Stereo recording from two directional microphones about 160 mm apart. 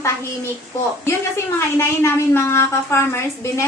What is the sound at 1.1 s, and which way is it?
A woman's voice, 15° left (ahead or behind).